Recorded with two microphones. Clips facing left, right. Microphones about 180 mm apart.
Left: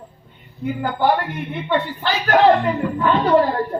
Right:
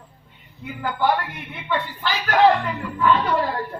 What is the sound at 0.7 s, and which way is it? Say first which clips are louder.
Speech: left 2 dB; 45° left (ahead or behind).